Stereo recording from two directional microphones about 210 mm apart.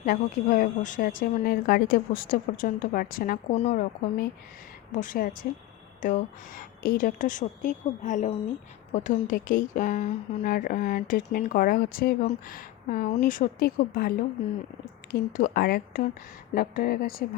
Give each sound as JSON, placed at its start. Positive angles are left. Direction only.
{"t": 0.0, "sound": "speech", "side_deg": 40}
{"t": 3.5, "sound": "a woman's voice", "side_deg": 30}
{"t": 4.9, "sound": "a woman's voice", "side_deg": 40}